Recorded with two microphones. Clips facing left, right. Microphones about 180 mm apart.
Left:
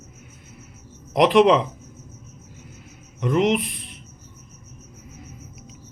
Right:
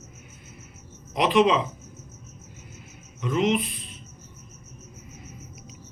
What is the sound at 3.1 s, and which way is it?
Music, 65° left (ahead or behind).